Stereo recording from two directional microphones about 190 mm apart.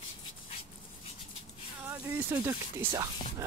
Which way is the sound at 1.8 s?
10° right (ahead or behind).